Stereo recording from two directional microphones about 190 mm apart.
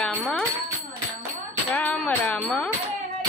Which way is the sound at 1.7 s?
5° left (ahead or behind).